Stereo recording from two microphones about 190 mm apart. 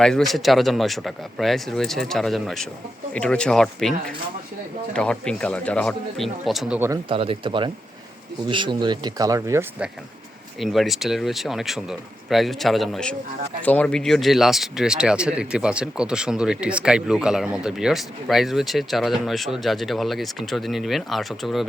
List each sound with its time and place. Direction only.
0.0 s speech: centre (ahead or behind)
6.7 s speech: 15° right (ahead or behind)
7.1 s speech: 30° right (ahead or behind)
10.6 s speech: centre (ahead or behind)